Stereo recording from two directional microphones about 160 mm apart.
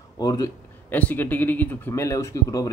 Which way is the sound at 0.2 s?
25° left (ahead or behind).